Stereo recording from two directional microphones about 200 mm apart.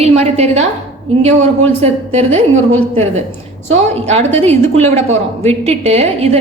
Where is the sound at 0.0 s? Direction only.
30° right (ahead or behind).